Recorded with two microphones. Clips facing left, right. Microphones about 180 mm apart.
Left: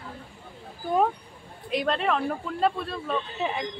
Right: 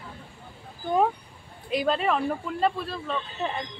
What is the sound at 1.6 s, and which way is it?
Speech, centre (ahead or behind).